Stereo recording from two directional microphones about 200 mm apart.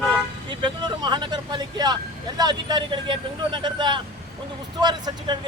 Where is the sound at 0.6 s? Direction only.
20° right (ahead or behind).